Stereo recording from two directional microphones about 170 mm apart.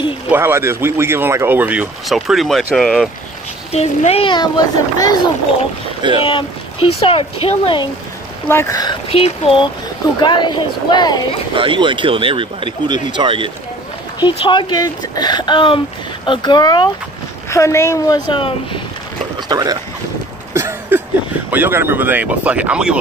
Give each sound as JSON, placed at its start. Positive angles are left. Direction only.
{"t": 0.3, "sound": "speech", "side_deg": -15}
{"t": 3.7, "sound": "speech", "side_deg": 40}
{"t": 6.0, "sound": "speech", "side_deg": -30}
{"t": 7.0, "sound": "speech", "side_deg": 35}
{"t": 8.5, "sound": "speech", "side_deg": 15}
{"t": 9.1, "sound": "speech", "side_deg": 35}
{"t": 11.5, "sound": "speech", "side_deg": -30}
{"t": 14.2, "sound": "speech", "side_deg": 25}
{"t": 19.5, "sound": "speech", "side_deg": -25}
{"t": 20.5, "sound": "a sound", "side_deg": -15}
{"t": 21.5, "sound": "speech", "side_deg": -10}